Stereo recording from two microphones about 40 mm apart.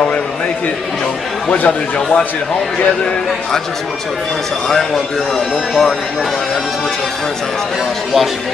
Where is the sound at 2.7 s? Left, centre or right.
Left.